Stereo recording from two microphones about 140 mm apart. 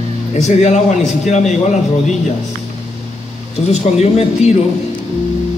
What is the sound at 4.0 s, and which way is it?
Speech, 50° left (ahead or behind).